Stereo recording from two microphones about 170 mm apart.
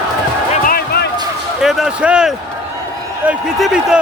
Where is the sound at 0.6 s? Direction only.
65° left (ahead or behind).